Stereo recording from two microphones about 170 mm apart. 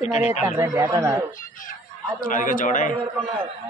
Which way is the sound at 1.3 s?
55° left (ahead or behind).